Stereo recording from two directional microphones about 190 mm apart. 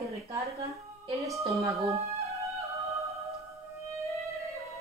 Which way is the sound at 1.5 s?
15° right (ahead or behind).